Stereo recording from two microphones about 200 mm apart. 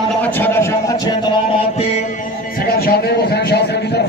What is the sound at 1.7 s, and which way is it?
A man's voice, 40° left (ahead or behind).